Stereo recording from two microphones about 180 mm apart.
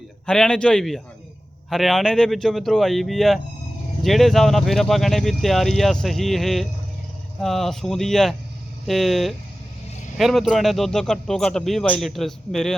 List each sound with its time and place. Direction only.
0.3 s speech: 5° left (ahead or behind)